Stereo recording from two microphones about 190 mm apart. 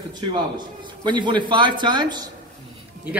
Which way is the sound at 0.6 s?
25° right (ahead or behind).